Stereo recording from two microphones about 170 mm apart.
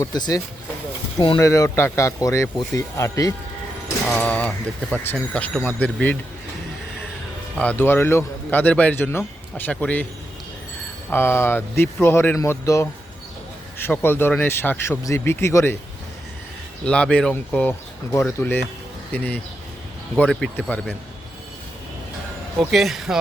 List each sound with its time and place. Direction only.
0.0 s speech: 25° left (ahead or behind)
4.0 s speech: 10° left (ahead or behind)
7.6 s speech: 10° left (ahead or behind)
11.1 s speech: 15° left (ahead or behind)
16.8 s speech: 5° left (ahead or behind)
22.5 s speech: centre (ahead or behind)